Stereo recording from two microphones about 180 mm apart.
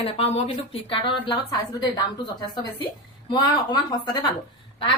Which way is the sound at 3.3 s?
25° left (ahead or behind).